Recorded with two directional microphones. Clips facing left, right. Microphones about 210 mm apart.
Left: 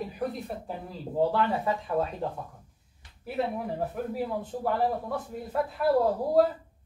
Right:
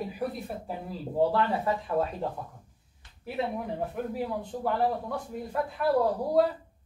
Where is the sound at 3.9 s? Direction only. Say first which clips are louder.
Left 1 dB; centre (ahead or behind).